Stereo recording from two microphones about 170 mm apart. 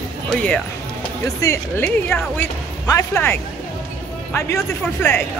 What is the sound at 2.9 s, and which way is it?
Speech, 15° left (ahead or behind).